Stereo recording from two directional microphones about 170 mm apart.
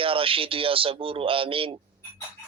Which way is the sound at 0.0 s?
30° right (ahead or behind).